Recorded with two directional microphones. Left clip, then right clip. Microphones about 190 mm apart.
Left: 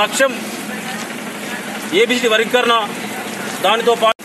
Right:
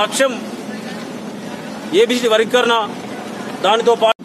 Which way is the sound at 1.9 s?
20° right (ahead or behind).